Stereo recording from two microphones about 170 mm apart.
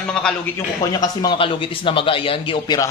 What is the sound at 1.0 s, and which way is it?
A man's voice, 25° left (ahead or behind).